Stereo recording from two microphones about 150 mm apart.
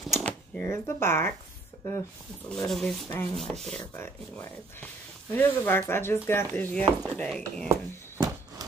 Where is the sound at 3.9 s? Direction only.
15° left (ahead or behind).